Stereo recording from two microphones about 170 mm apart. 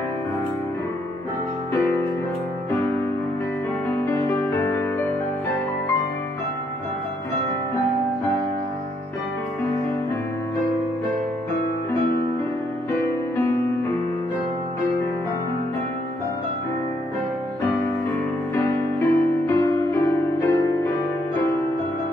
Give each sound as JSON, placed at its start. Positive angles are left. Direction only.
{"t": 4.0, "sound": "music", "side_deg": 15}
{"t": 18.5, "sound": "music", "side_deg": 15}